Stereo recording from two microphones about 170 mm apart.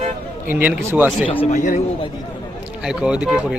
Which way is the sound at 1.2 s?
35° left (ahead or behind).